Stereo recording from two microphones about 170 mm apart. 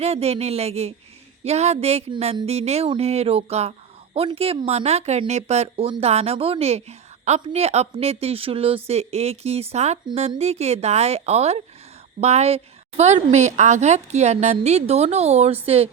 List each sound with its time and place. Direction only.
0.0 s speech: 40° right (ahead or behind)